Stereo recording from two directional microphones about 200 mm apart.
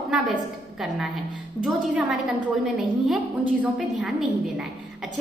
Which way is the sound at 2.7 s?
Centre (ahead or behind).